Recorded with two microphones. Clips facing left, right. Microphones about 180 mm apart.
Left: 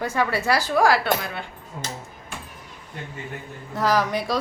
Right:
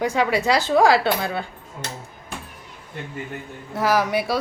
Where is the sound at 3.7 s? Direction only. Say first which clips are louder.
Right 2 dB; 10° right (ahead or behind).